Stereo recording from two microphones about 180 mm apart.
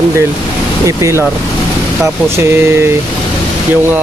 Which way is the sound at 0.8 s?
15° right (ahead or behind).